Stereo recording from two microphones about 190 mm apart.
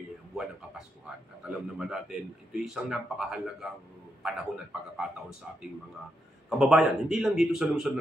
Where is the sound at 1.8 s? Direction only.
5° right (ahead or behind).